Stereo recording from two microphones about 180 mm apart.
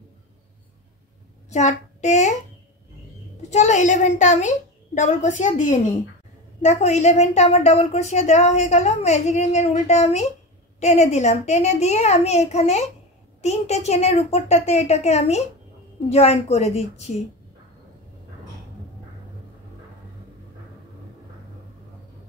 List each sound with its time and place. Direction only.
1.5 s child singing: 40° left (ahead or behind)
3.4 s a woman's voice: 40° left (ahead or behind)